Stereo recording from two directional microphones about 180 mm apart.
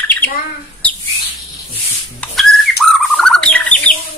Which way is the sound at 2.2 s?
Centre (ahead or behind).